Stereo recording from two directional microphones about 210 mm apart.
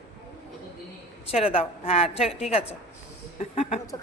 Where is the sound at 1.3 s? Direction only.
30° left (ahead or behind).